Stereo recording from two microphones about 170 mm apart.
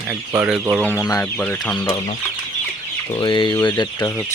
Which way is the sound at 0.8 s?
15° left (ahead or behind).